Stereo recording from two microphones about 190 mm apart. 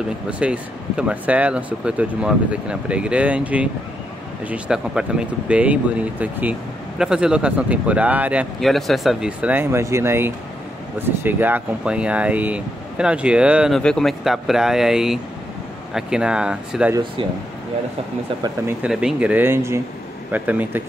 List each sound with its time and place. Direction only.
0.3 s speech: 5° right (ahead or behind)
16.9 s speech: 25° right (ahead or behind)
18.4 s speech: 15° right (ahead or behind)